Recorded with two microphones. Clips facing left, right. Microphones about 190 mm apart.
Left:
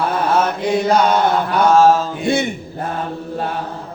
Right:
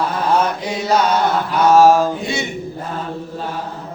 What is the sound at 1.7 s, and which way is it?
Mantra, 10° right (ahead or behind).